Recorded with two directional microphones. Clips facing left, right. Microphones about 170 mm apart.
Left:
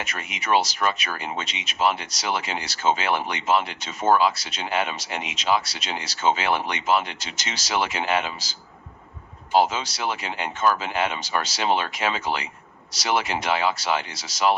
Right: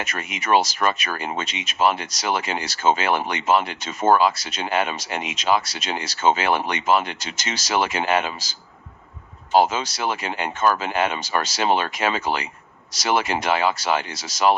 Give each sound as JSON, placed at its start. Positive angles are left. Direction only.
{"t": 0.0, "sound": "speech", "side_deg": -50}